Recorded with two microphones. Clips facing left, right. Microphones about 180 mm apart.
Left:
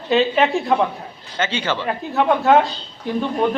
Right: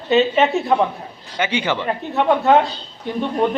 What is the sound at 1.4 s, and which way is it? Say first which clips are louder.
Speech: right 2 dB; 15° right (ahead or behind).